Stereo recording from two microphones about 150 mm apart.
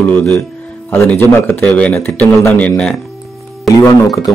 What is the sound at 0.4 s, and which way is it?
Music, 15° left (ahead or behind).